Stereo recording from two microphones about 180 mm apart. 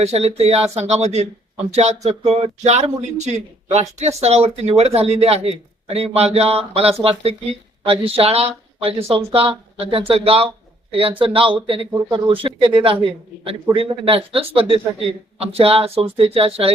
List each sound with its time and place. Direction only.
0.0 s speech: 35° right (ahead or behind)